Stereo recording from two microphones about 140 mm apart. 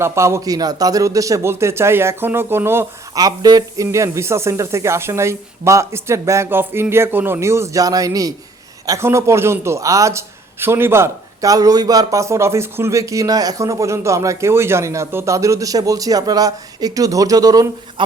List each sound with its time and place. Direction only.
0.0 s speech: 20° right (ahead or behind)